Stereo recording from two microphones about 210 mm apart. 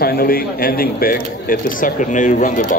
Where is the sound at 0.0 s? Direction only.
45° left (ahead or behind).